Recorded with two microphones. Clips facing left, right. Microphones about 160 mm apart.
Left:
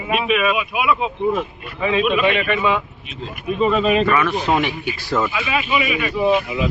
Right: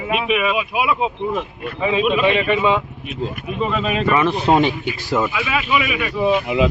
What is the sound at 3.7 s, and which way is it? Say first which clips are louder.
Speech: left 5 dB; centre (ahead or behind).